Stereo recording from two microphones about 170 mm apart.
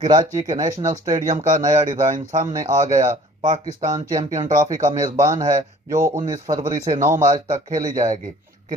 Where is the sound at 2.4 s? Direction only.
20° right (ahead or behind).